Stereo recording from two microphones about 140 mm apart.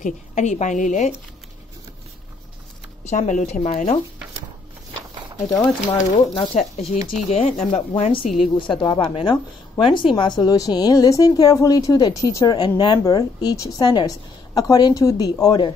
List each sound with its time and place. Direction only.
0.0 s a woman's voice: 60° left (ahead or behind)
3.1 s a woman's voice: 60° left (ahead or behind)
6.1 s speech: 45° left (ahead or behind)
8.5 s speech: 35° left (ahead or behind)